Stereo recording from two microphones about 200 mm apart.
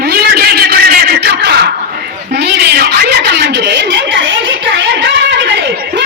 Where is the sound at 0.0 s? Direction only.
55° right (ahead or behind).